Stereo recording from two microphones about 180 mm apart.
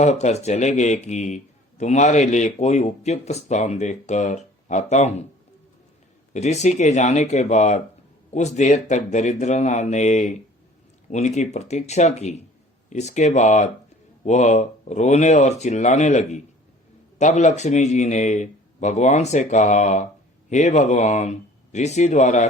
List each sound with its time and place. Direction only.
0.0 s speech: 40° left (ahead or behind)
6.3 s speech: 40° left (ahead or behind)